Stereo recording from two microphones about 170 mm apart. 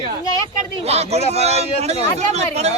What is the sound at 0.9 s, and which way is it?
Speech, 40° right (ahead or behind).